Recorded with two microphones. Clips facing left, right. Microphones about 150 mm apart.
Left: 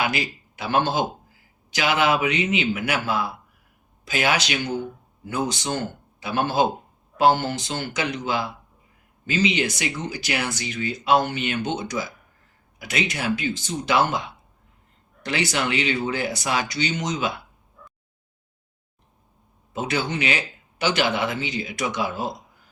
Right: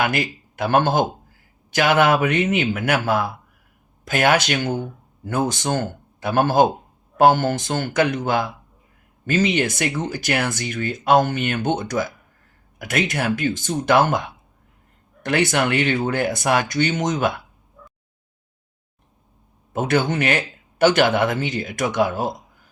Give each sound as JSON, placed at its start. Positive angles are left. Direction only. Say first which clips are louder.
{"t": 0.0, "sound": "a man's voice", "louder": "right 4 dB", "side_deg": -50}
{"t": 19.7, "sound": "speech", "louder": "right 6 dB", "side_deg": -50}